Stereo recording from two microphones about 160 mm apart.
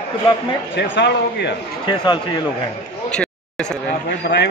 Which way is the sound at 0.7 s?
90° left.